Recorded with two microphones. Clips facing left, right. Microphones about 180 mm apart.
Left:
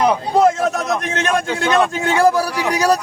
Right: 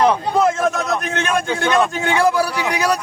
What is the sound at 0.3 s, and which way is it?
A man's voice, 40° left (ahead or behind).